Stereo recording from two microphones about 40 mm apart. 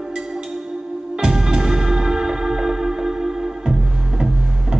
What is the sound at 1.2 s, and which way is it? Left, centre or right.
Music, centre.